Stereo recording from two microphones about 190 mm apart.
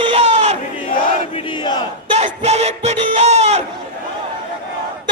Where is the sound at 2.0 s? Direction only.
35° right (ahead or behind).